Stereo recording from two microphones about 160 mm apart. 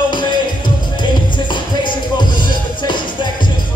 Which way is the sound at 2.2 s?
30° left (ahead or behind).